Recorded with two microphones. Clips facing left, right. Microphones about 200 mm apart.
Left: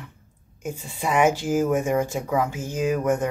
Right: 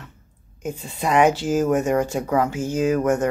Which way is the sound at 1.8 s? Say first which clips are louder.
Right 2 dB; 65° right (ahead or behind).